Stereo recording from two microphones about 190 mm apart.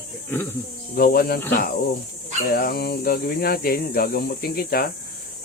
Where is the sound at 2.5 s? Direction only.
55° left (ahead or behind).